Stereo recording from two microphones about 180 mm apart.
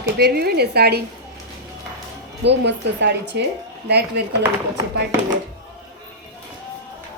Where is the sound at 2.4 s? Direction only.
75° right (ahead or behind).